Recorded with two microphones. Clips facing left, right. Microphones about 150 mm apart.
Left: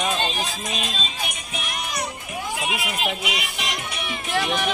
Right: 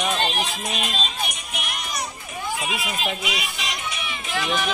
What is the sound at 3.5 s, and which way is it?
Music, 60° left (ahead or behind).